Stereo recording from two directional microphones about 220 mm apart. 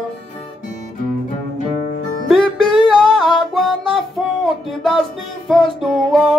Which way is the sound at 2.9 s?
Centre (ahead or behind).